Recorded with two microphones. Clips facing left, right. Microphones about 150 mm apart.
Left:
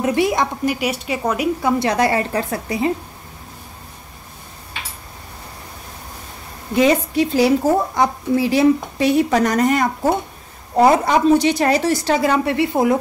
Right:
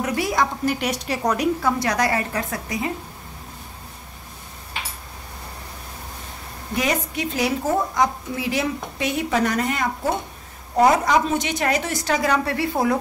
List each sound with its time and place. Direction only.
0.0 s a woman's voice: 25° left (ahead or behind)
0.7 s a woman's voice: 5° left (ahead or behind)
1.6 s a woman's voice: 25° left (ahead or behind)
6.7 s a woman's voice: 25° left (ahead or behind)
10.8 s a woman's voice: 30° left (ahead or behind)